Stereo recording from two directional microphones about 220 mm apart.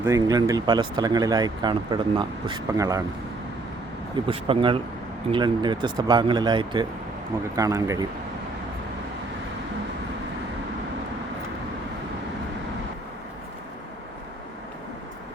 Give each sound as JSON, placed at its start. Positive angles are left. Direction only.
{"t": 0.0, "sound": "speech", "side_deg": -15}
{"t": 4.3, "sound": "speech", "side_deg": -25}